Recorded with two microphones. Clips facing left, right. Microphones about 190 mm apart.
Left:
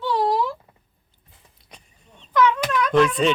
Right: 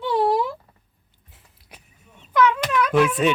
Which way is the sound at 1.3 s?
5° right (ahead or behind).